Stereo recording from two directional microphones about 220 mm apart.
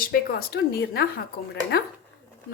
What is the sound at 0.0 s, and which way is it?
Speech, 45° left (ahead or behind).